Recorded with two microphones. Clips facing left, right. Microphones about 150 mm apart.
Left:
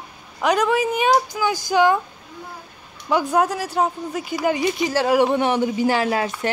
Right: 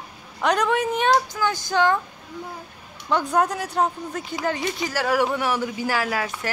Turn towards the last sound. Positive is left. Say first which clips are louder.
# left 5 dB
turn(degrees=25)  # may be behind; listen again after turning